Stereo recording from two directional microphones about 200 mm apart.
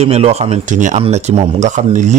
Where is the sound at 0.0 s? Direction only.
30° right (ahead or behind).